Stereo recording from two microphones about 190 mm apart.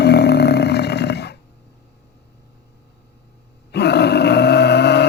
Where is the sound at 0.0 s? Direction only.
60° left (ahead or behind).